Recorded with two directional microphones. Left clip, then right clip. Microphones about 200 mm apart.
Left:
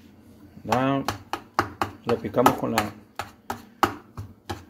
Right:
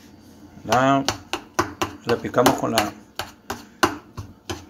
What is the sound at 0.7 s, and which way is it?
Speech, 30° left (ahead or behind).